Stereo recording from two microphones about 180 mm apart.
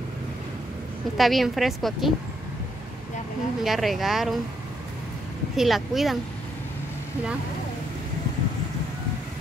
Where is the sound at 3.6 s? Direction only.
Centre (ahead or behind).